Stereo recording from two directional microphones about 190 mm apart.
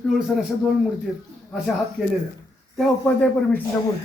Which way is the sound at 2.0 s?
5° right (ahead or behind).